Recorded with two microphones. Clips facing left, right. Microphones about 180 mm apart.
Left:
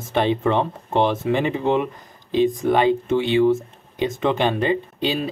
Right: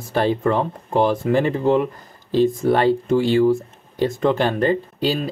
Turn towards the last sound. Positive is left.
turn(degrees=20)  # may be behind; listen again after turning